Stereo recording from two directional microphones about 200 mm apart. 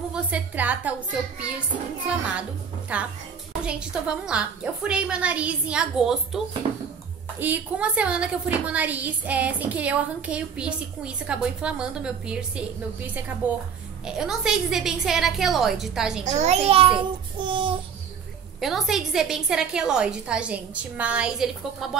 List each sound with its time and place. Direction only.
0.1 s a woman's voice: 5° right (ahead or behind)
2.9 s a woman's voice: 5° right (ahead or behind)
16.3 s a child's voice: 35° right (ahead or behind)
17.4 s child singing: 25° right (ahead or behind)
18.6 s a woman's voice: centre (ahead or behind)